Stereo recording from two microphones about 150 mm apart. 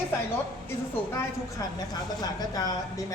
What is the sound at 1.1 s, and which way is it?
A woman's voice, 25° left (ahead or behind).